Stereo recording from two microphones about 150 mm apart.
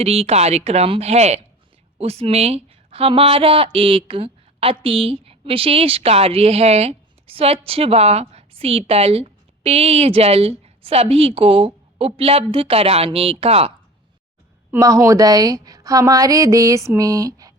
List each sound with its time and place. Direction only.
0.0 s a woman's voice: 45° right (ahead or behind)
14.7 s a woman's voice: 20° right (ahead or behind)